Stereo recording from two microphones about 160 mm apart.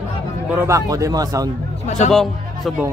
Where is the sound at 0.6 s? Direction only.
20° right (ahead or behind).